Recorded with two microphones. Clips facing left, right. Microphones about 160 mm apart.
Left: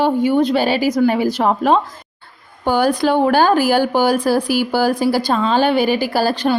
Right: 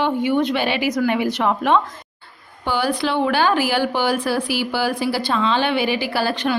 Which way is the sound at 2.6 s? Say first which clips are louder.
Left 6 dB; 45° left (ahead or behind).